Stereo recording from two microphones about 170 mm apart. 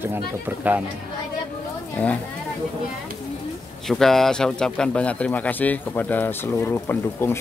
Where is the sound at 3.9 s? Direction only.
Centre (ahead or behind).